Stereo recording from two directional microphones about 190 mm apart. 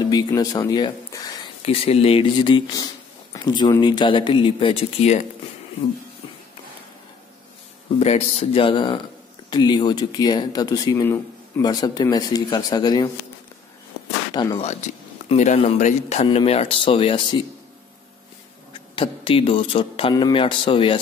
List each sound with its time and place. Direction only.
0.0 s speech: 20° left (ahead or behind)
1.6 s speech: 30° left (ahead or behind)
8.0 s speech: 35° left (ahead or behind)
14.3 s speech: 20° left (ahead or behind)
14.6 s speech: 35° left (ahead or behind)
18.7 s speech: 25° left (ahead or behind)